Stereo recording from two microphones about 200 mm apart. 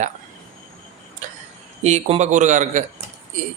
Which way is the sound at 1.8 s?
35° right (ahead or behind).